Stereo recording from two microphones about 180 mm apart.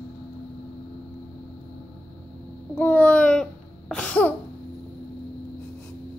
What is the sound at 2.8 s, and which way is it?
Babbling, 10° left (ahead or behind).